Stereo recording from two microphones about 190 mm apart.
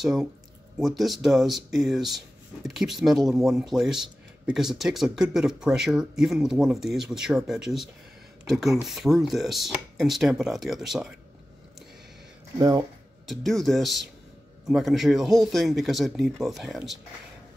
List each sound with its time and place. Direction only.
0.0 s speech: centre (ahead or behind)
12.5 s speech: 15° right (ahead or behind)
13.3 s speech: centre (ahead or behind)